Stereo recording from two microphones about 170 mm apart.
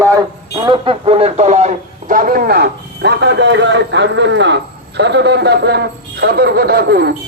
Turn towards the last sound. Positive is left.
turn(degrees=-70)  # may be behind; listen again after turning